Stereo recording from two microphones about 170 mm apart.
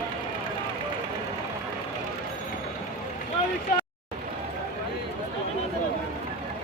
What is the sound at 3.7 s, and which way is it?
Vehicle, 60° left (ahead or behind).